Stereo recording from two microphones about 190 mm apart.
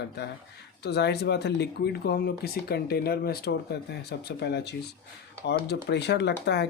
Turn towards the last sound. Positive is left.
turn(degrees=65)  # may be behind; listen again after turning